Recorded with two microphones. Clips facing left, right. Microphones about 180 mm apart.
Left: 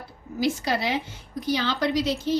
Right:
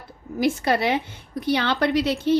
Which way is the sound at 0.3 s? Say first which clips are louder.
Right 4 dB; 55° right (ahead or behind).